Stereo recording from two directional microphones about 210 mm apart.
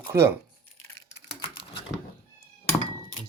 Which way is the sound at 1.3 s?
25° left (ahead or behind).